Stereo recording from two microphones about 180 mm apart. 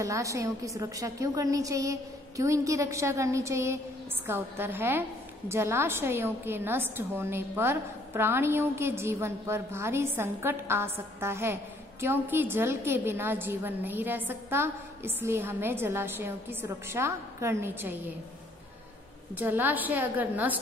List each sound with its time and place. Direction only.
0.0 s a woman's voice: 15° right (ahead or behind)
19.3 s a woman's voice: 10° right (ahead or behind)